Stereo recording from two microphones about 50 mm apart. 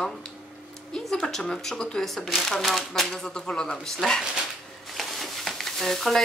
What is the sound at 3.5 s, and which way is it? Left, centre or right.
Speech, centre.